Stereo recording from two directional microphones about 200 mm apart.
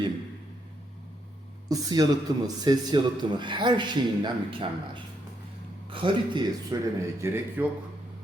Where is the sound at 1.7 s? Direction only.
20° right (ahead or behind).